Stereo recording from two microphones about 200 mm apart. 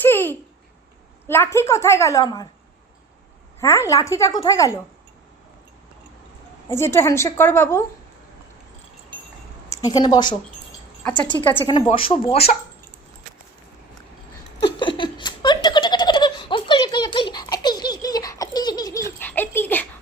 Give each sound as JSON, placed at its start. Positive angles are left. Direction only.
{"t": 0.0, "sound": "a sound", "side_deg": 10}
{"t": 1.3, "sound": "a woman's voice", "side_deg": 10}
{"t": 3.6, "sound": "a woman's voice", "side_deg": 15}
{"t": 6.7, "sound": "a woman's voice", "side_deg": 15}
{"t": 9.7, "sound": "speech", "side_deg": 20}
{"t": 11.6, "sound": "speech", "side_deg": 25}
{"t": 14.6, "sound": "giggle", "side_deg": 25}